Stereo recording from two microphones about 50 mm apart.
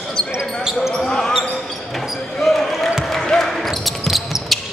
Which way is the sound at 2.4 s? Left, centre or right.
Centre.